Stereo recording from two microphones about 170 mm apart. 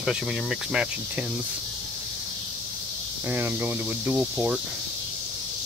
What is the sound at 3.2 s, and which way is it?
Speech, 10° right (ahead or behind).